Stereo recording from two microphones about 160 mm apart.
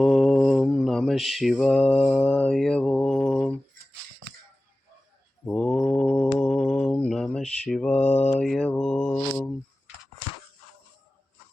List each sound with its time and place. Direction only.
0.0 s mantra: centre (ahead or behind)
5.5 s mantra: 5° left (ahead or behind)
6.1 s a sound: 15° left (ahead or behind)
6.5 s mantra: 5° left (ahead or behind)